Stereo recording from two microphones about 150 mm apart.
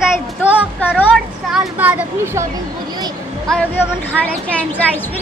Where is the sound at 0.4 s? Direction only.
10° left (ahead or behind).